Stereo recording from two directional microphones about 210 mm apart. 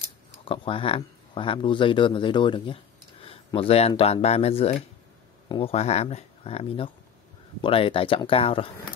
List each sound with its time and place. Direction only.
0.5 s speech: 25° left (ahead or behind)